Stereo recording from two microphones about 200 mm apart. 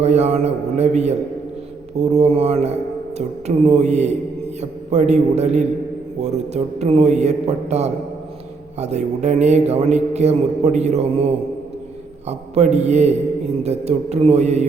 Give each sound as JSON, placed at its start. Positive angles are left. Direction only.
{"t": 0.0, "sound": "a man's voice", "side_deg": -35}
{"t": 12.3, "sound": "a man's voice", "side_deg": -35}